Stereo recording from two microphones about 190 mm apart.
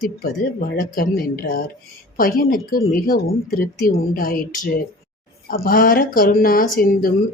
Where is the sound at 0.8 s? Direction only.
50° left (ahead or behind).